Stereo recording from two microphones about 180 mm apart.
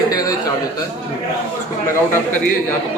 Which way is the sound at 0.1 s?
20° left (ahead or behind).